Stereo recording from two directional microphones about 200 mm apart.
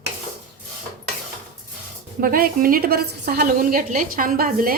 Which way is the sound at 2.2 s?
45° right (ahead or behind).